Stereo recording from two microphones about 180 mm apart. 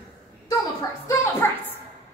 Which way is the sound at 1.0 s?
15° left (ahead or behind).